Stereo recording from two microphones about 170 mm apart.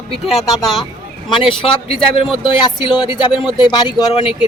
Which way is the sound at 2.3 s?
30° left (ahead or behind).